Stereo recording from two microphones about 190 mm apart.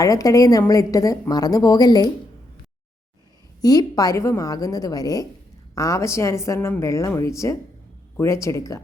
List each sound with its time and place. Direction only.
0.0 s a woman's voice: 20° left (ahead or behind)
3.6 s a woman's voice: 20° left (ahead or behind)